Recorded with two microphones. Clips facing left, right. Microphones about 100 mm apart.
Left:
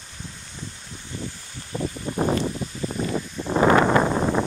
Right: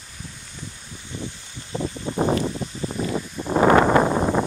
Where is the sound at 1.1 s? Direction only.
20° right (ahead or behind).